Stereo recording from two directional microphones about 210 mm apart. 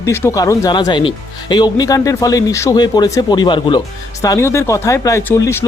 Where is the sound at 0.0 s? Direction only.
15° left (ahead or behind).